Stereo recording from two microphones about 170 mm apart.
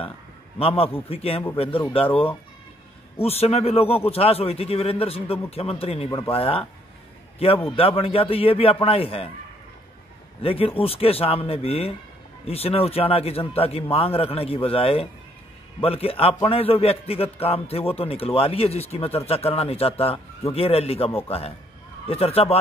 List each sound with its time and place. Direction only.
0.6 s a man's voice: 35° left (ahead or behind)
10.4 s a man's voice: 35° left (ahead or behind)